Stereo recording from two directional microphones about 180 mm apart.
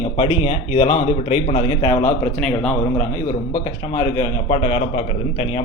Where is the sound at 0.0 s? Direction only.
30° left (ahead or behind).